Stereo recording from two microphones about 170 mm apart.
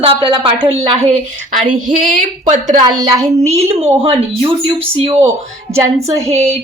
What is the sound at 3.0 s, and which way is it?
Speech, 20° right (ahead or behind).